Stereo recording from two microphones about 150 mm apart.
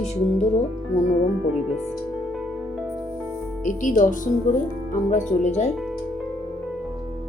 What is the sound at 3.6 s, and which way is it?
Speech, 55° left (ahead or behind).